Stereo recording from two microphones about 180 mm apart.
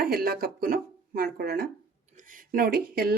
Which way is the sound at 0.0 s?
55° right (ahead or behind).